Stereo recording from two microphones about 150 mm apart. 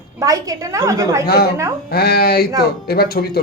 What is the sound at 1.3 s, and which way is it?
Speech, 90° left.